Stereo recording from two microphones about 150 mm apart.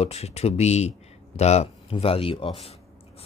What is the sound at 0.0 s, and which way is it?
Speech, 40° left (ahead or behind).